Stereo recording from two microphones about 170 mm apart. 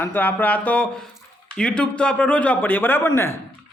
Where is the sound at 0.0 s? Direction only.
10° left (ahead or behind).